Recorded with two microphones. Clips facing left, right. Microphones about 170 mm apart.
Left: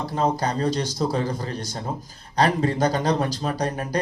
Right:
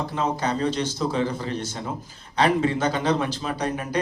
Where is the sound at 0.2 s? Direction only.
40° left (ahead or behind).